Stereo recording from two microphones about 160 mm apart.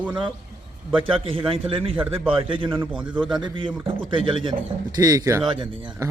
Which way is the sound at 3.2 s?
5° right (ahead or behind).